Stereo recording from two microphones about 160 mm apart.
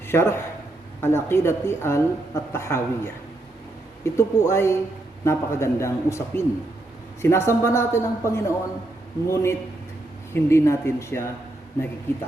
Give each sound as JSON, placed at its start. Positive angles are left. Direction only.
{"t": 0.1, "sound": "a woman's voice", "side_deg": 15}